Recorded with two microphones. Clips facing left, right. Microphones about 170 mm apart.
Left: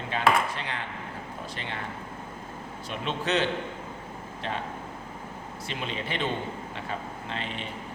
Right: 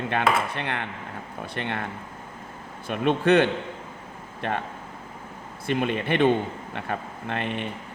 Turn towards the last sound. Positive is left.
turn(degrees=-60)  # may be behind; listen again after turning